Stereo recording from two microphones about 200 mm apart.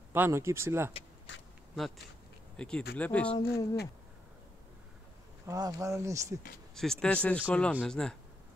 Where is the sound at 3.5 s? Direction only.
55° left (ahead or behind).